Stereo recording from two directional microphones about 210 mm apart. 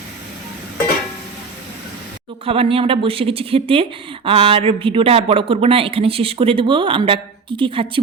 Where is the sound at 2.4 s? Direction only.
25° right (ahead or behind).